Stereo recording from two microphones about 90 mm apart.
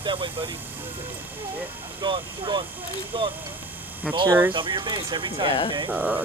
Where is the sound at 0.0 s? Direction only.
65° right (ahead or behind).